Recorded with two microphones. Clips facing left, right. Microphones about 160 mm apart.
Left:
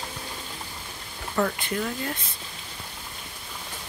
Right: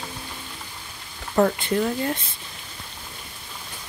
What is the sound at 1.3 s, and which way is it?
Speech, 35° right (ahead or behind).